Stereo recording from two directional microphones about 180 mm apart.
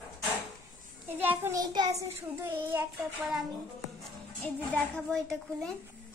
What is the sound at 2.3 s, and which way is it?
Child singing, 15° right (ahead or behind).